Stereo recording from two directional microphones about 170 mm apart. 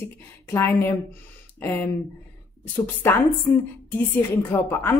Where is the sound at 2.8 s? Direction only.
10° left (ahead or behind).